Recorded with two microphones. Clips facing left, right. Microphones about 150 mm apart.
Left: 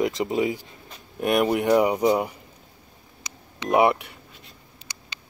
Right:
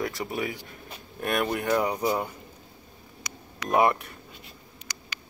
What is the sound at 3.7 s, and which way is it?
Speech, 10° left (ahead or behind).